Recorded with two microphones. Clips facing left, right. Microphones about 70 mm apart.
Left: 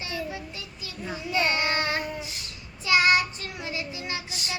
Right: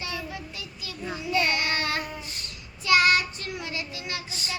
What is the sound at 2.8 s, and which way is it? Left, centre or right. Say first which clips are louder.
Child singing: even; left.